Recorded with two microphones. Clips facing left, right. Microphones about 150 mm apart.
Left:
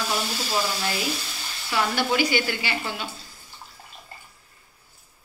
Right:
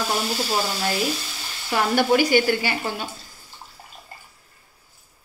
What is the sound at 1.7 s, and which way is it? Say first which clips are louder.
A woman's voice: right 5 dB; 45° right (ahead or behind).